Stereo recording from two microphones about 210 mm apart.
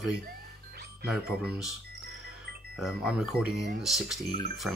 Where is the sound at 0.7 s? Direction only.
50° right (ahead or behind).